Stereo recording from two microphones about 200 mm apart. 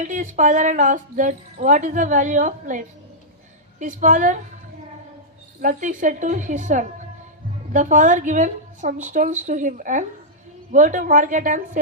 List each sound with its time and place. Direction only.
0.0 s speech: 40° right (ahead or behind)
5.6 s speech: 40° right (ahead or behind)